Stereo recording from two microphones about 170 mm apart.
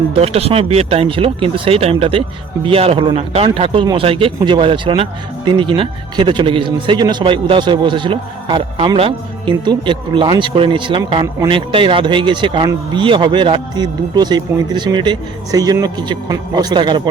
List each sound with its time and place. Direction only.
0.1 s a man's voice: 35° right (ahead or behind)